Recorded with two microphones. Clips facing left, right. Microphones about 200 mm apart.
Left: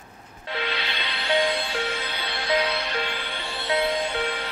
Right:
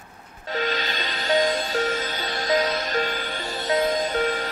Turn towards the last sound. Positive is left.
turn(degrees=-45)  # may be behind; listen again after turning